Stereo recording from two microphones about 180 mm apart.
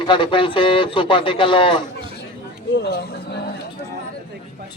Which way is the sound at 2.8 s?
60° left (ahead or behind).